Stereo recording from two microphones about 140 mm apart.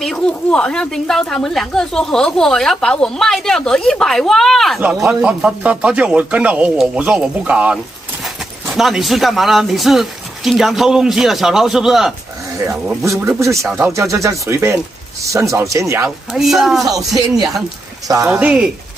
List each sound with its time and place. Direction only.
0.0 s speech: 5° left (ahead or behind)
13.4 s a man's voice: 20° right (ahead or behind)
16.3 s speech: centre (ahead or behind)
16.9 s a man's voice: 25° right (ahead or behind)
18.3 s speech: 10° right (ahead or behind)